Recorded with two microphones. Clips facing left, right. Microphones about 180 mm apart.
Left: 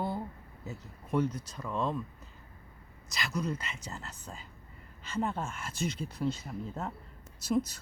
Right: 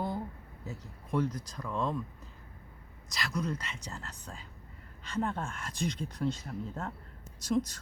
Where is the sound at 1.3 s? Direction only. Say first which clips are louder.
Even; 25° left (ahead or behind).